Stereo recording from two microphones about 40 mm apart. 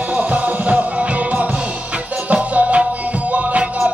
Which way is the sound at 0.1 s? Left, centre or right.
Right.